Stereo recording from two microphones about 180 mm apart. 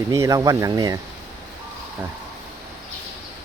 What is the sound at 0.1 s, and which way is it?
Speech, 20° right (ahead or behind).